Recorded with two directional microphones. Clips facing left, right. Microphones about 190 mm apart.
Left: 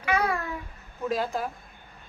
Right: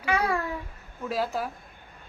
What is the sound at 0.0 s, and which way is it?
Babbling, 30° right (ahead or behind).